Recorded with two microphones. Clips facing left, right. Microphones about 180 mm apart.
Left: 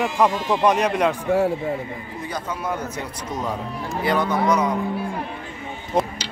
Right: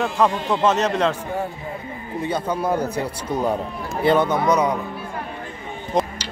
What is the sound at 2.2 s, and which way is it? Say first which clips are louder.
Speech: right 6 dB; 30° right (ahead or behind).